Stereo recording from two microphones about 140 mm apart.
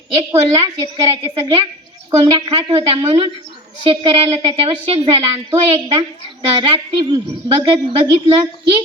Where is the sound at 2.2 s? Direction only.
35° right (ahead or behind).